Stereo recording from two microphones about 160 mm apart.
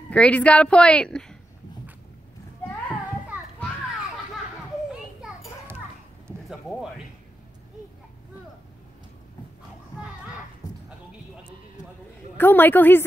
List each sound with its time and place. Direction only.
0.1 s a woman's voice: 10° left (ahead or behind)
10.6 s a sound: 25° left (ahead or behind)
12.4 s a woman's voice: 10° left (ahead or behind)